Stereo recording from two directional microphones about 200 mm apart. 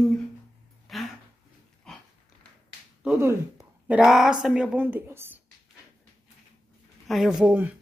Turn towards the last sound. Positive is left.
turn(degrees=-5)  # may be behind; listen again after turning